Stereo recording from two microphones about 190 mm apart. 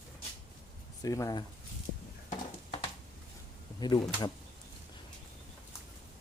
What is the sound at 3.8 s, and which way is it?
Speech, 20° left (ahead or behind).